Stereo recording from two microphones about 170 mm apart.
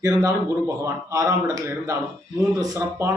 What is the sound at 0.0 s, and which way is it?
Speech, 20° right (ahead or behind).